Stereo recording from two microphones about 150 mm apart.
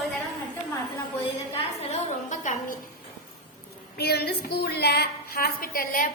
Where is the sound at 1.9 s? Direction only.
55° left (ahead or behind).